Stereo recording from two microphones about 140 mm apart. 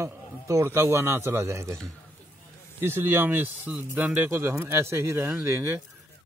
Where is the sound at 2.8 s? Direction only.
15° right (ahead or behind).